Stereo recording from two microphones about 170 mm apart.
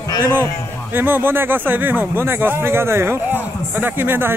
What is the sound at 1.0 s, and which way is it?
Speech, 10° right (ahead or behind).